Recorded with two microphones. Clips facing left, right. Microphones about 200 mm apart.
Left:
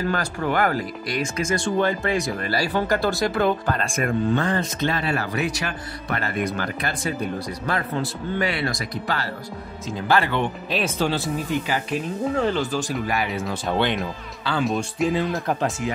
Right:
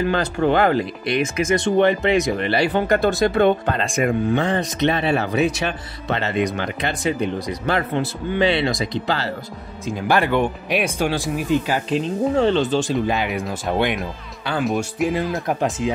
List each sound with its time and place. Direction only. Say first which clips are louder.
0.1 s speech: right 5 dB; 25° right (ahead or behind)
10.0 s speech: right 3 dB; 15° right (ahead or behind)
14.6 s speech: right 2 dB; centre (ahead or behind)
15.4 s speech: right 3 dB; 15° right (ahead or behind)